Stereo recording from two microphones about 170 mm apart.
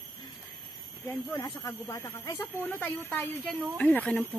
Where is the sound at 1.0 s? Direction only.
15° left (ahead or behind).